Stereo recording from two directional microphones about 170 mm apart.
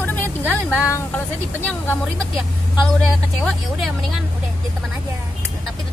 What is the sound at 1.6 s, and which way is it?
Speech, 10° left (ahead or behind).